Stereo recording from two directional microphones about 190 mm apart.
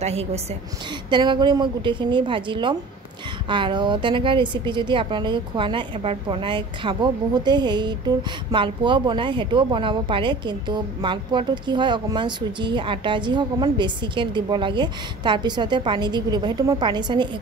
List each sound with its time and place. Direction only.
0.0 s a woman's voice: 35° right (ahead or behind)
1.1 s a woman's voice: 25° right (ahead or behind)